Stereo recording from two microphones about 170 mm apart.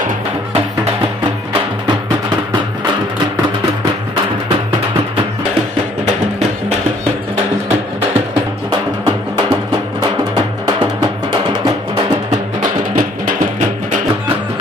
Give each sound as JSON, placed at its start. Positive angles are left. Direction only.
{"t": 12.3, "sound": "music", "side_deg": -50}